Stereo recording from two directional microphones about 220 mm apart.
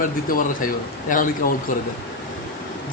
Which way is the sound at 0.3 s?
40° left (ahead or behind).